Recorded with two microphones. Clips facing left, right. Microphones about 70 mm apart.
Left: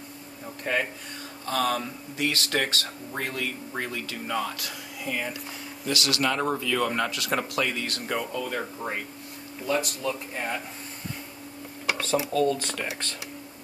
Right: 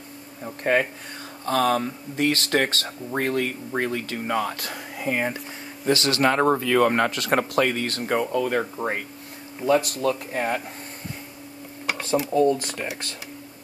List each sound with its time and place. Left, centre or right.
0.7 s speech: right
9.7 s speech: right
12.3 s speech: right
12.5 s speech: centre